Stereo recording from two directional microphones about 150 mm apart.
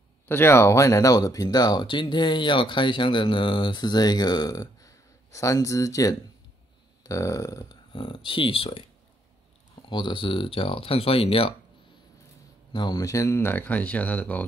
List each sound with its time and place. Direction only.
0.3 s speech: 15° left (ahead or behind)
7.0 s burping: 20° left (ahead or behind)
7.9 s speech: 35° left (ahead or behind)
9.8 s speech: 30° left (ahead or behind)
12.7 s speech: 25° left (ahead or behind); by 14.4 s 10° left (ahead or behind)